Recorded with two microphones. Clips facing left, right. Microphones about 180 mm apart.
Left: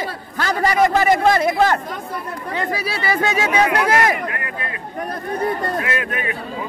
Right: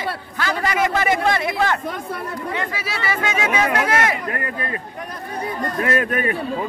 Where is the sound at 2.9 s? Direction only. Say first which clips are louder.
Left 3 dB; 35° left (ahead or behind).